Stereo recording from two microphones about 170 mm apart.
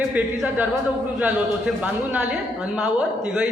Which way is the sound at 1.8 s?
5° right (ahead or behind).